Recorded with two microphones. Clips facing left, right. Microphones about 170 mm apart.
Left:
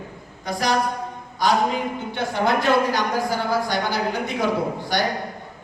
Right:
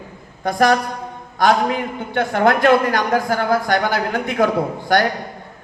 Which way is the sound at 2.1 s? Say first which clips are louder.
Right 6 dB; 55° right (ahead or behind).